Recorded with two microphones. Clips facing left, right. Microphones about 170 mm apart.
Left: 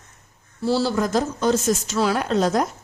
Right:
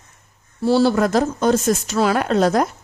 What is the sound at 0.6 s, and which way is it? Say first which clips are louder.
A woman's voice: right 5 dB; 60° right (ahead or behind).